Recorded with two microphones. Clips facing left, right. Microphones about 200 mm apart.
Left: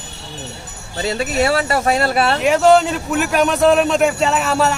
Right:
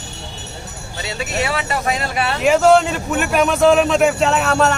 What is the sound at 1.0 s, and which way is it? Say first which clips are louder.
Speech: left 5 dB; 40° left (ahead or behind).